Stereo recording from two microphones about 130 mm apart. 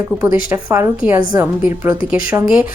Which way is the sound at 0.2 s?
20° right (ahead or behind).